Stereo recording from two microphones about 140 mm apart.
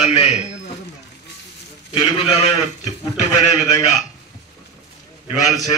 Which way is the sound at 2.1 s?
45° left (ahead or behind).